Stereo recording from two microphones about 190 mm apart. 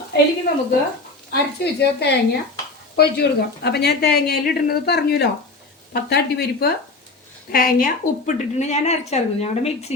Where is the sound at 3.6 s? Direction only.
60° left (ahead or behind); by 9.9 s 35° left (ahead or behind).